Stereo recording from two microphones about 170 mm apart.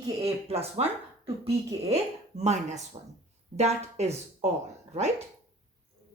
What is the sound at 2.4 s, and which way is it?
Speech, 40° right (ahead or behind).